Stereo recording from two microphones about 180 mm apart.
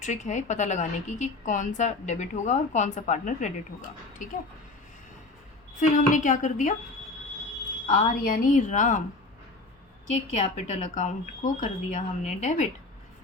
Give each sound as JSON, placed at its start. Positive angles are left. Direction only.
{"t": 0.0, "sound": "a woman's voice", "side_deg": 40}
{"t": 5.8, "sound": "a woman's voice", "side_deg": 45}
{"t": 7.9, "sound": "a woman's voice", "side_deg": 50}
{"t": 10.1, "sound": "a woman's voice", "side_deg": 40}